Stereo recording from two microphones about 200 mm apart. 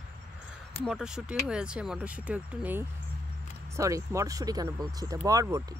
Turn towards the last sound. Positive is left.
turn(degrees=-15)  # may be behind; listen again after turning